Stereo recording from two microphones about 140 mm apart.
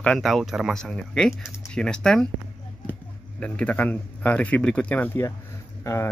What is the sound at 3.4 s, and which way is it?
Speech, 10° left (ahead or behind).